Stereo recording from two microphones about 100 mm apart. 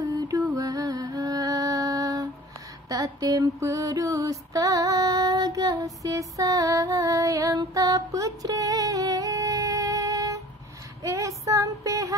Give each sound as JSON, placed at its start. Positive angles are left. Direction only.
{"t": 0.0, "sound": "music", "side_deg": -35}
{"t": 2.9, "sound": "female singing", "side_deg": -35}
{"t": 11.0, "sound": "child singing", "side_deg": -30}